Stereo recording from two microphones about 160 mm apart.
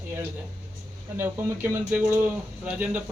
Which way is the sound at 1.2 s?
15° right (ahead or behind).